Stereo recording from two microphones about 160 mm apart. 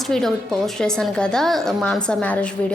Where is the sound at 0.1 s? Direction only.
5° left (ahead or behind).